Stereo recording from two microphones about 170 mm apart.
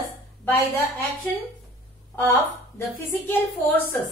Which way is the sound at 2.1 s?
15° left (ahead or behind).